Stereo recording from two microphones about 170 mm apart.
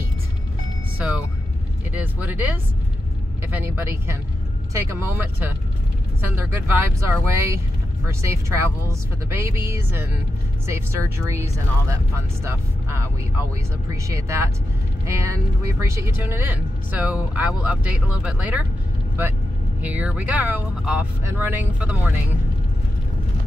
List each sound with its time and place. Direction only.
0.9 s music: 5° right (ahead or behind)
1.9 s speech: 10° right (ahead or behind)
19.8 s speech: 10° right (ahead or behind)